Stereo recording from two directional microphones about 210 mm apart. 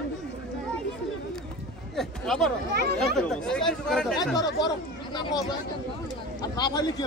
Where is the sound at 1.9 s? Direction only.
Centre (ahead or behind).